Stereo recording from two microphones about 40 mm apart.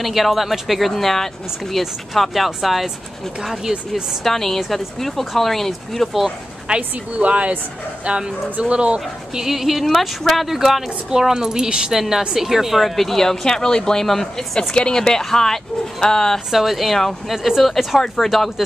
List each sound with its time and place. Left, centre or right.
0.0 s speech: centre
3.9 s speech: centre
6.7 s a woman's voice: right
9.3 s a woman's voice: centre
11.1 s a woman's voice: centre
14.0 s speech: centre
16.4 s speech: centre